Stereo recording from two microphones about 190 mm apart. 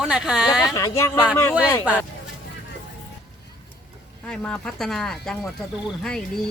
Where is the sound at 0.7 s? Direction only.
15° left (ahead or behind).